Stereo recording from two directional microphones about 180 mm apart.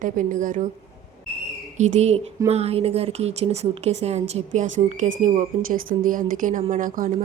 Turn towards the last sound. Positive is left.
turn(degrees=-50)  # may be behind; listen again after turning